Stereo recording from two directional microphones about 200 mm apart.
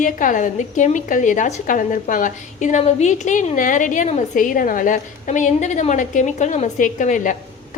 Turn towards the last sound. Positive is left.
turn(degrees=40)  # may be behind; listen again after turning